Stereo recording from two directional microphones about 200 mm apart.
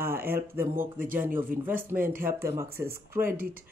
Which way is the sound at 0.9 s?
45° right (ahead or behind).